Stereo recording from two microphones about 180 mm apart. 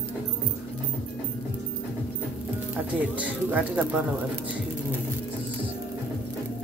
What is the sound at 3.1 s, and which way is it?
Speech, 10° right (ahead or behind).